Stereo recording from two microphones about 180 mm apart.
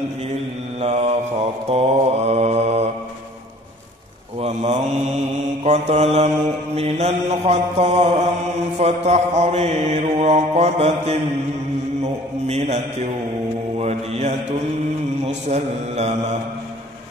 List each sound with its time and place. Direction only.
0.7 s mantra: 35° right (ahead or behind)
4.4 s mantra: 40° right (ahead or behind)